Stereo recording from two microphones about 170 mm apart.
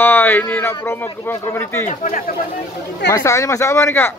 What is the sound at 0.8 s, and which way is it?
Speech, 15° left (ahead or behind).